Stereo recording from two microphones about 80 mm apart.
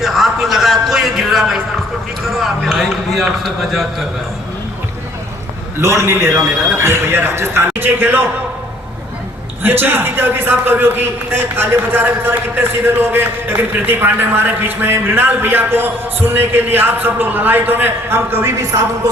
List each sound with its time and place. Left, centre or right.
0.0 s a sound: centre
2.2 s a man's voice: centre
5.8 s a man's voice: right
9.6 s a man's voice: right